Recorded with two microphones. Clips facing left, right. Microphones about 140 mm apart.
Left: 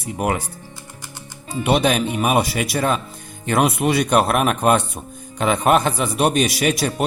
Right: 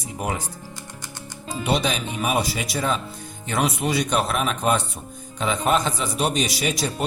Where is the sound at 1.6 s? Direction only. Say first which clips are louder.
Left 6 dB; 60° left (ahead or behind).